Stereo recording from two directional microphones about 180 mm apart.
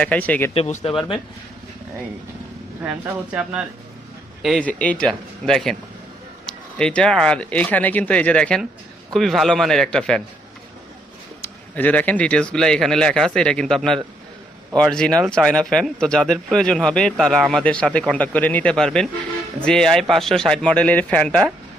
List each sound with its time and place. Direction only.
0.0 s speech: 10° left (ahead or behind)
0.5 s speech: 35° left (ahead or behind)
2.8 s speech: 5° right (ahead or behind)
4.4 s speech: 5° left (ahead or behind)
11.4 s speech: 10° left (ahead or behind)